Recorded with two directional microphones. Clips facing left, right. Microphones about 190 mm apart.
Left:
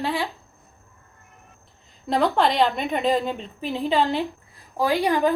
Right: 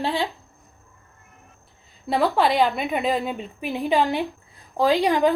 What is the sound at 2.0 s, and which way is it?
A woman's voice, 5° right (ahead or behind).